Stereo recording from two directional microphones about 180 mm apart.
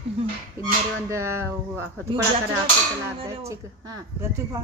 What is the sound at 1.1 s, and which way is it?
Speech, 15° right (ahead or behind).